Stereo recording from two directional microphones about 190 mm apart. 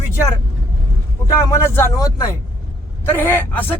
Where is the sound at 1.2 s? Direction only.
15° left (ahead or behind).